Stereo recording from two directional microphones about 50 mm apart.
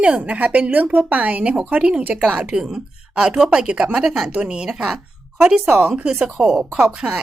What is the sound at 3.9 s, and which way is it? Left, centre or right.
Speech, centre.